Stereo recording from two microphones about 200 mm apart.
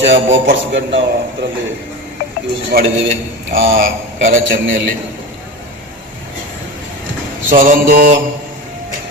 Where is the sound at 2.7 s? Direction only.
45° right (ahead or behind).